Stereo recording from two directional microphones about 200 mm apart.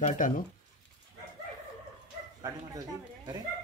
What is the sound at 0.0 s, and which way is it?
Speech, 40° left (ahead or behind).